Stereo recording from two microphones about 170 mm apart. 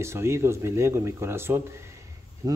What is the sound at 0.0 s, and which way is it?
A man's voice, 15° right (ahead or behind).